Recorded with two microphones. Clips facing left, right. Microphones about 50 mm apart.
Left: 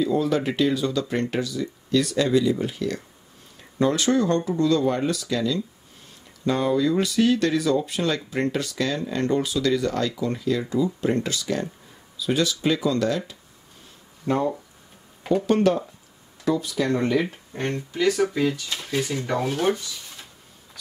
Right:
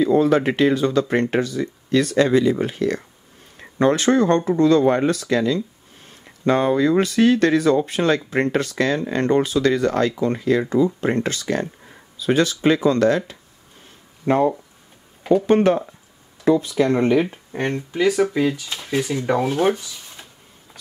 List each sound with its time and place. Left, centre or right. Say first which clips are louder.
0.0 s speech: right 6 dB; right
14.2 s speech: right 6 dB; right